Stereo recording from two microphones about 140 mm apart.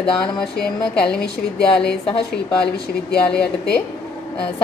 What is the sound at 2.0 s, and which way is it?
Speech, 40° left (ahead or behind).